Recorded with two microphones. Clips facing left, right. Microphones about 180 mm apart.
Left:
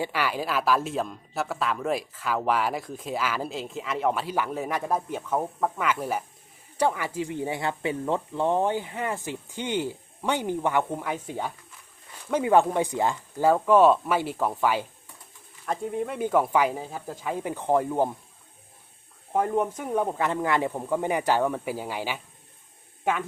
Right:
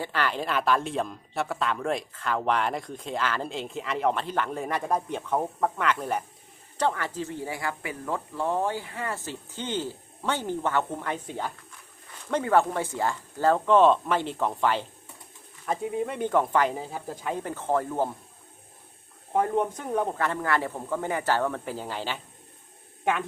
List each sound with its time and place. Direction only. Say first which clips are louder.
0.0 s speech: left 1 dB; 10° left (ahead or behind)
19.3 s speech: even; 5° left (ahead or behind)
20.2 s speech: left 2 dB; 15° left (ahead or behind)